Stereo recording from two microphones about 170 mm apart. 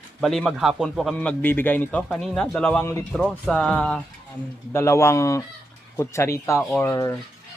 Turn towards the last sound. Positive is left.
turn(degrees=15)  # may be behind; listen again after turning